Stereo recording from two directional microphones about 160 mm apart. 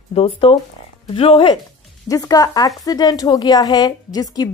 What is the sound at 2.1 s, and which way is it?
Speech, 20° left (ahead or behind).